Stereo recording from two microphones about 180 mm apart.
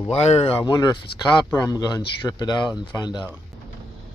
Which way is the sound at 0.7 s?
20° left (ahead or behind).